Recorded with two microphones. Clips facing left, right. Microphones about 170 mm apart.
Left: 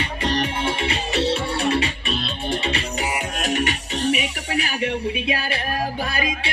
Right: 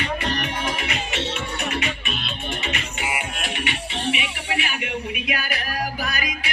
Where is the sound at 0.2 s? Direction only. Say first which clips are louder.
Left 3 dB; 30° left (ahead or behind).